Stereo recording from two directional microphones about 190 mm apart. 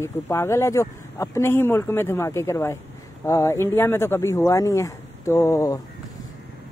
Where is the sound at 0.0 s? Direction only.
15° left (ahead or behind).